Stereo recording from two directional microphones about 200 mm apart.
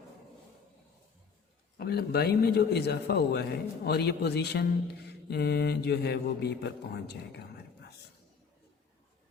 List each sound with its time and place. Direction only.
1.8 s a man's voice: 50° left (ahead or behind)